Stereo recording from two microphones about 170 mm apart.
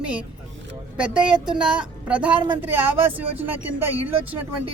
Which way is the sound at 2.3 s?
30° right (ahead or behind).